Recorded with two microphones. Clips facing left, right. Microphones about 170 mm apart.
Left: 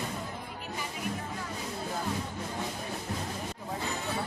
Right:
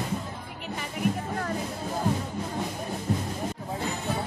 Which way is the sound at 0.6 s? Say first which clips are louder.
Right 9 dB; 65° right (ahead or behind).